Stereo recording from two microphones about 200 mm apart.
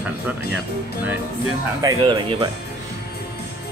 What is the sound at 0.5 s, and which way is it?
Speech, 10° right (ahead or behind).